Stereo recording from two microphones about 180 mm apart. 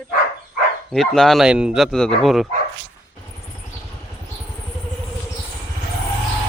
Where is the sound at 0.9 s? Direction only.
Centre (ahead or behind).